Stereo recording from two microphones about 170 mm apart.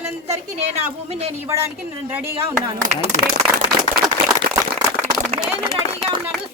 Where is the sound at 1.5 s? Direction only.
15° right (ahead or behind).